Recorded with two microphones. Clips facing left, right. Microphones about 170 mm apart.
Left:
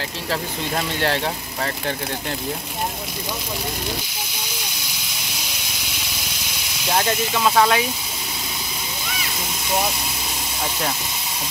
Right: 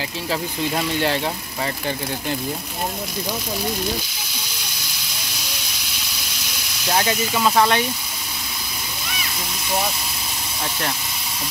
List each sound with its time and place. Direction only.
0.3 s speech: centre (ahead or behind)
6.9 s speech: centre (ahead or behind)